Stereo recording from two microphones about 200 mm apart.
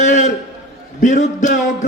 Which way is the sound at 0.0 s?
35° left (ahead or behind).